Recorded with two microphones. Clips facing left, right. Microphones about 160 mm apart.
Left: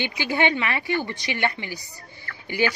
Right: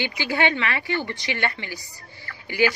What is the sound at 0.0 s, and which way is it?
Speech, 20° left (ahead or behind).